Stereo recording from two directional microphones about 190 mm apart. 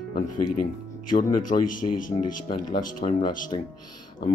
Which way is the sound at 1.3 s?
45° left (ahead or behind).